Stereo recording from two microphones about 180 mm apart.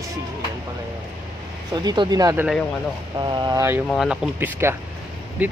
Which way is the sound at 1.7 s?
25° right (ahead or behind).